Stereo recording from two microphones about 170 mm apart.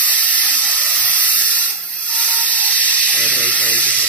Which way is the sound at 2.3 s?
10° left (ahead or behind).